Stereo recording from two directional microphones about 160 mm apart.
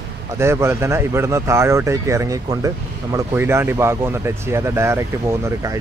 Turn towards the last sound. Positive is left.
turn(degrees=-20)  # may be behind; listen again after turning